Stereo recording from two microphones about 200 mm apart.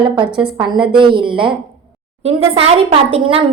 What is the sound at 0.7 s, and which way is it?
A woman's voice, 25° right (ahead or behind).